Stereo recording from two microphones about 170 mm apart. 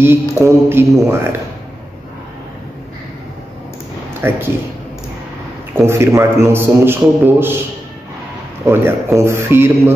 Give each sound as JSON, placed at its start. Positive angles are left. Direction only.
{"t": 0.0, "sound": "a man's voice", "side_deg": -15}
{"t": 4.2, "sound": "a man's voice", "side_deg": -15}
{"t": 5.8, "sound": "a man's voice", "side_deg": -15}
{"t": 8.6, "sound": "a man's voice", "side_deg": -15}